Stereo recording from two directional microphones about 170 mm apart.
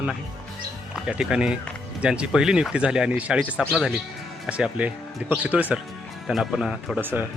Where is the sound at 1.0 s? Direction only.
5° right (ahead or behind).